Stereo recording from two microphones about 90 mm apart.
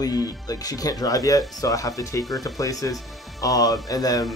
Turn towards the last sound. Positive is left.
turn(degrees=45)  # may be behind; listen again after turning